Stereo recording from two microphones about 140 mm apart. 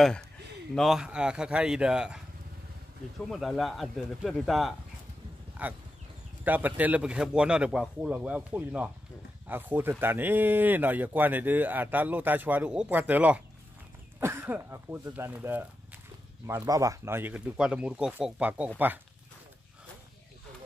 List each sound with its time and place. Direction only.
0.7 s speech: centre (ahead or behind)
3.3 s speech: centre (ahead or behind)